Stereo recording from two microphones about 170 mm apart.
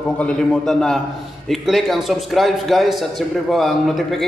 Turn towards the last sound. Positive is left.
turn(degrees=0)  # may be behind; listen again after turning